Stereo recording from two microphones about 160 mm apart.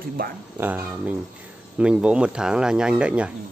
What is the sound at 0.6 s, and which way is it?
Speech, 10° right (ahead or behind).